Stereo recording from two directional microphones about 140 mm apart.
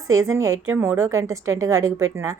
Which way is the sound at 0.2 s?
20° right (ahead or behind).